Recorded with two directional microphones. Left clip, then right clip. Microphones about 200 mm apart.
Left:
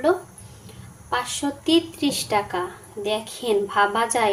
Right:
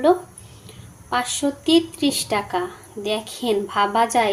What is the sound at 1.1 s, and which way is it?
A woman's voice, 10° right (ahead or behind).